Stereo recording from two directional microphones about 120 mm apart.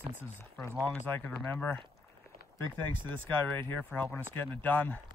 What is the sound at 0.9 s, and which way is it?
Speech, 15° left (ahead or behind).